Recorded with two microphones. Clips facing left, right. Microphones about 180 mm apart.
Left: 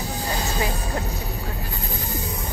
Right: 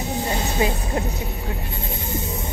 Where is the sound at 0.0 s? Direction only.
25° right (ahead or behind).